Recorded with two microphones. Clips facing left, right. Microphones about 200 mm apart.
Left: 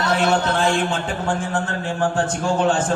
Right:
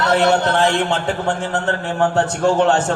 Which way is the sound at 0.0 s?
65° right (ahead or behind).